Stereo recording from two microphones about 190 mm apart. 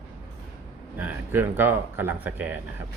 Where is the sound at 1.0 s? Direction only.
10° right (ahead or behind).